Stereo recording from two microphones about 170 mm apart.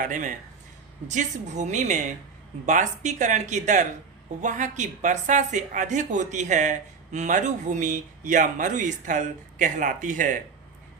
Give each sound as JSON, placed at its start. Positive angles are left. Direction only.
{"t": 0.0, "sound": "a woman's voice", "side_deg": -50}